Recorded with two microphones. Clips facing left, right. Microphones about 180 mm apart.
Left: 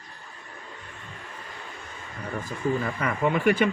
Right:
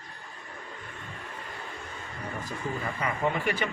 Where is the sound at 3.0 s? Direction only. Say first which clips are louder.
Left 4 dB; 55° left (ahead or behind).